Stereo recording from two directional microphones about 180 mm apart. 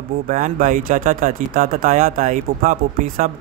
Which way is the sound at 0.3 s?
45° right (ahead or behind).